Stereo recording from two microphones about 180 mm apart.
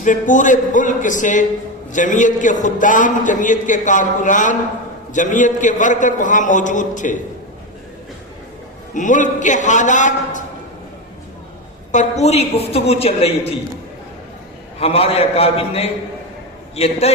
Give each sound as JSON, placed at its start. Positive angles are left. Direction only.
{"t": 0.0, "sound": "a man's voice", "side_deg": 45}
{"t": 8.9, "sound": "a man's voice", "side_deg": 45}
{"t": 11.9, "sound": "a woman's voice", "side_deg": 40}
{"t": 14.8, "sound": "a woman's voice", "side_deg": 35}